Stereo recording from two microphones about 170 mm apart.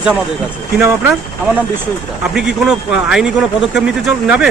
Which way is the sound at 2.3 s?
5° right (ahead or behind).